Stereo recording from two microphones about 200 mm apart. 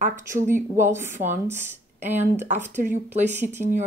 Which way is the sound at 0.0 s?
40° right (ahead or behind).